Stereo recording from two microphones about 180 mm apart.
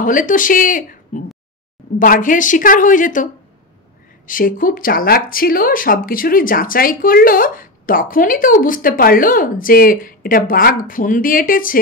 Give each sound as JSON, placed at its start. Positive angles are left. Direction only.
{"t": 0.0, "sound": "speech", "side_deg": 50}
{"t": 4.3, "sound": "speech", "side_deg": 50}